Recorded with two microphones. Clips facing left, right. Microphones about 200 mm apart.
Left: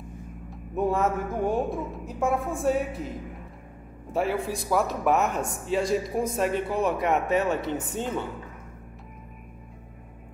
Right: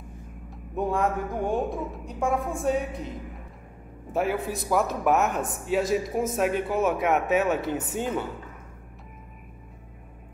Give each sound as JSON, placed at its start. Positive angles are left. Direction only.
{"t": 0.5, "sound": "a woman's voice", "side_deg": 5}
{"t": 4.1, "sound": "a woman's voice", "side_deg": 0}